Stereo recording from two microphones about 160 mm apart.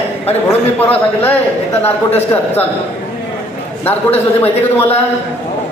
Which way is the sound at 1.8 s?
10° left (ahead or behind).